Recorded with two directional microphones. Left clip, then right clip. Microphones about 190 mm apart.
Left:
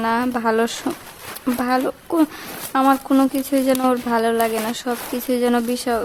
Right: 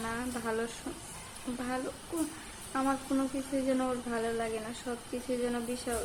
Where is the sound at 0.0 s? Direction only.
50° left (ahead or behind).